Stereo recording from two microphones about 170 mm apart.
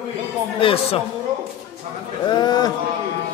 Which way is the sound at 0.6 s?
35° left (ahead or behind).